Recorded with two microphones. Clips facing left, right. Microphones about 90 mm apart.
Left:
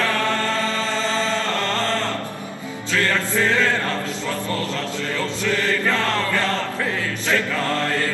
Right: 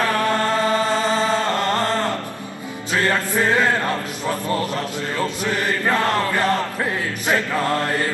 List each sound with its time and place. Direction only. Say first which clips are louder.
0.0 s chant: right 2 dB; 20° right (ahead or behind)
2.9 s music: right 1 dB; 20° right (ahead or behind)
5.2 s chant: right 1 dB; 20° right (ahead or behind)